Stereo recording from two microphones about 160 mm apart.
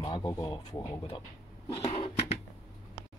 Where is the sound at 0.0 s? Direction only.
25° left (ahead or behind).